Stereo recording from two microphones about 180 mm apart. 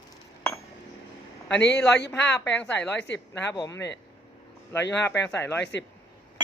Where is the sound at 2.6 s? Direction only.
5° left (ahead or behind).